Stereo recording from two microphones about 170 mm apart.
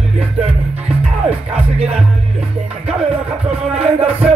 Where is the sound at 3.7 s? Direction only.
35° right (ahead or behind).